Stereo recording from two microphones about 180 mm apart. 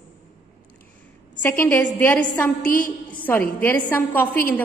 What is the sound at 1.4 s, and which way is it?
A woman's voice, 10° left (ahead or behind).